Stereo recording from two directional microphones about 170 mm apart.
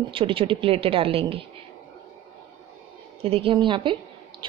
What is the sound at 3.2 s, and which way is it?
Speech, 35° right (ahead or behind).